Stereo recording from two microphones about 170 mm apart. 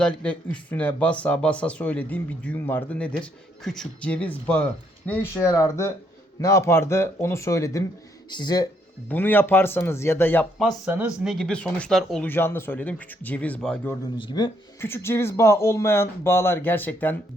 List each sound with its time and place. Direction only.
0.0 s speech: 5° left (ahead or behind); by 8.6 s 25° left (ahead or behind)
9.0 s speech: 10° left (ahead or behind)
14.2 s speech: 25° left (ahead or behind)
14.8 s speech: 15° left (ahead or behind)